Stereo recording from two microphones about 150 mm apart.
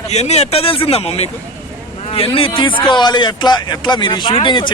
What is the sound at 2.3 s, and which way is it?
Speech, 35° left (ahead or behind).